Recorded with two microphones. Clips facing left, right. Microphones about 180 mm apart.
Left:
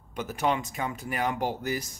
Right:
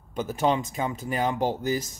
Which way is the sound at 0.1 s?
30° right (ahead or behind).